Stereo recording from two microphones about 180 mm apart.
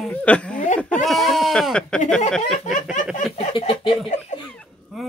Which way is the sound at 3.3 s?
30° left (ahead or behind).